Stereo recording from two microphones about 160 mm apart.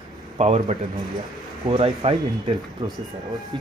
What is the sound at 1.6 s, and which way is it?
Speech, 35° right (ahead or behind).